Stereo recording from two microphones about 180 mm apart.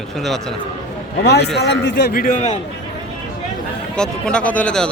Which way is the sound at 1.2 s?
65° left (ahead or behind).